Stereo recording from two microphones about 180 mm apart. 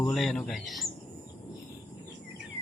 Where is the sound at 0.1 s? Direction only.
Centre (ahead or behind).